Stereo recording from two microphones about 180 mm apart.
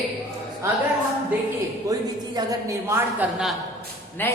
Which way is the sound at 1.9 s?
20° right (ahead or behind).